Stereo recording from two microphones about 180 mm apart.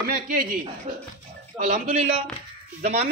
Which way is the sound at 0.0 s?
50° right (ahead or behind).